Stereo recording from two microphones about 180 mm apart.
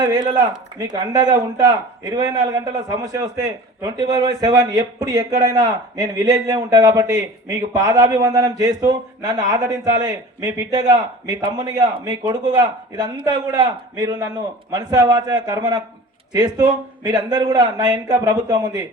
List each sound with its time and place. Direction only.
0.0 s a man's voice: 20° right (ahead or behind)